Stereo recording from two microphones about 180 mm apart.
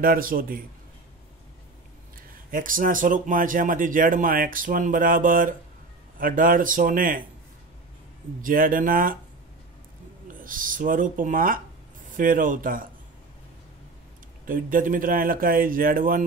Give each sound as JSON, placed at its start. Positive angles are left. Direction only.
{"t": 0.0, "sound": "speech", "side_deg": -55}
{"t": 2.5, "sound": "speech", "side_deg": -50}
{"t": 8.4, "sound": "speech", "side_deg": -50}
{"t": 10.4, "sound": "speech", "side_deg": -50}
{"t": 14.4, "sound": "speech", "side_deg": -50}